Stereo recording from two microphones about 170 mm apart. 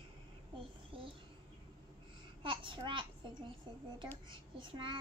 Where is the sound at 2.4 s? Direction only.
30° right (ahead or behind).